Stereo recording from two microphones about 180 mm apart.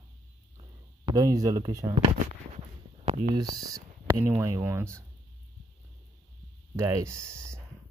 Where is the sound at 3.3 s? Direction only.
20° right (ahead or behind).